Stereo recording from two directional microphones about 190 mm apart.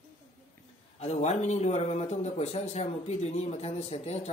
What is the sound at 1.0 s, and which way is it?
A man's voice, 35° left (ahead or behind).